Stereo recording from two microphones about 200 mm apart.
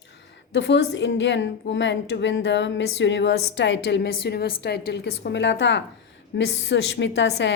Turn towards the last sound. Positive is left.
turn(degrees=60)  # may be behind; listen again after turning